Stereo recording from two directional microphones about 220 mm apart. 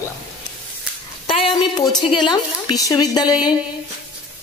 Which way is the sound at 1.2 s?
25° left (ahead or behind).